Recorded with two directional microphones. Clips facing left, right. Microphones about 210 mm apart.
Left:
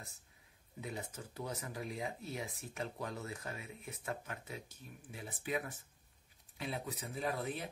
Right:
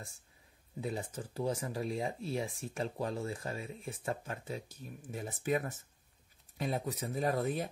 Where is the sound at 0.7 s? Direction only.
35° right (ahead or behind).